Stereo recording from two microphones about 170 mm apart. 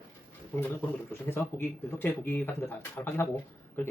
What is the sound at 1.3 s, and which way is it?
Speech, 10° left (ahead or behind).